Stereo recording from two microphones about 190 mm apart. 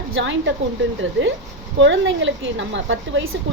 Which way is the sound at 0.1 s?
80° right.